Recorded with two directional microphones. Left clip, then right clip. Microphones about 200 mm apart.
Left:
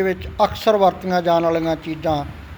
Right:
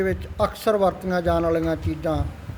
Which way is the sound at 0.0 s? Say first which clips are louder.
Left 5 dB; 5° right (ahead or behind).